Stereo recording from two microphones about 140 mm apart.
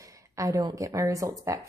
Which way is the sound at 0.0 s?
25° right (ahead or behind).